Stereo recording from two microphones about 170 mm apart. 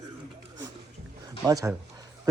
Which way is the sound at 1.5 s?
20° right (ahead or behind).